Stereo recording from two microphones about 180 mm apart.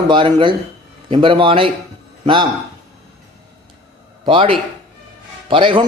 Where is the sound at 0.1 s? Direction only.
25° right (ahead or behind).